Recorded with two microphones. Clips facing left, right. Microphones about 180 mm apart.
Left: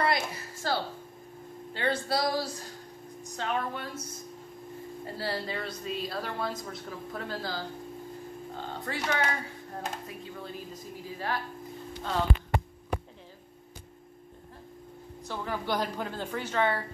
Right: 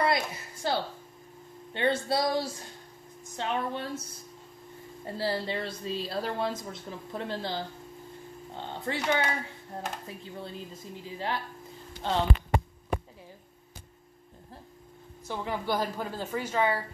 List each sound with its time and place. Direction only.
0.0 s a sound: 20° right (ahead or behind)
1.7 s a woman's voice: 25° right (ahead or behind)
5.0 s a woman's voice: 25° right (ahead or behind)
15.2 s speech: 20° right (ahead or behind)
15.7 s speech: 5° right (ahead or behind)